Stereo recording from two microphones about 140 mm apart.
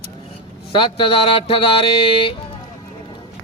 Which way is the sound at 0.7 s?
35° left (ahead or behind).